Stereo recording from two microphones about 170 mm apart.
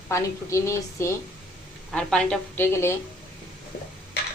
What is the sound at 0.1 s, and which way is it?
A woman's voice, 15° left (ahead or behind).